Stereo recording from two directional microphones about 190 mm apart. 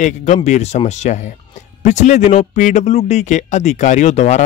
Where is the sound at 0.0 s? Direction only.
40° left (ahead or behind).